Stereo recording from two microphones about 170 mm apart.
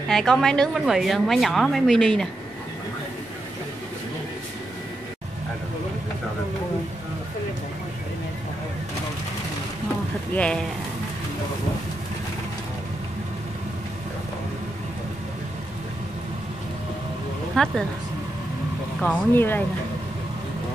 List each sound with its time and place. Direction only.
0.1 s a woman's voice: 5° left (ahead or behind)
10.3 s speech: 5° left (ahead or behind)
17.6 s a woman's voice: 5° left (ahead or behind)
18.9 s speech: 10° left (ahead or behind)